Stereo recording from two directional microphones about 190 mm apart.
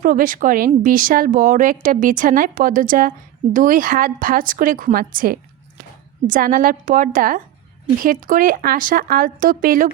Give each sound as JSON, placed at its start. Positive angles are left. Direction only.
{"t": 0.0, "sound": "a woman's voice", "side_deg": -45}